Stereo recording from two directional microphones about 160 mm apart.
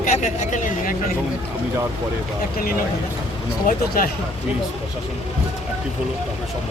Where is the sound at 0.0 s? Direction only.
50° left (ahead or behind).